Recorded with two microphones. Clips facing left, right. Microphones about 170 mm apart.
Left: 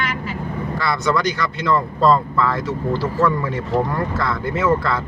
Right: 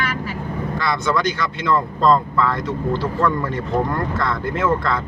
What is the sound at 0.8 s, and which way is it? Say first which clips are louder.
Speech: left 1 dB; centre (ahead or behind).